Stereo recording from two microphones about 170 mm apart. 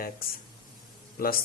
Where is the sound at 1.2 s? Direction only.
60° left (ahead or behind).